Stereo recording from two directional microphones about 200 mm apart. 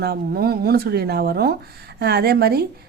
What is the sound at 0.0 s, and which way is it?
Speech, 50° right (ahead or behind).